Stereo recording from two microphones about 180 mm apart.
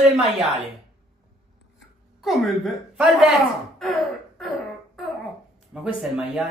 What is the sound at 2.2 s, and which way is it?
A man's voice, centre (ahead or behind).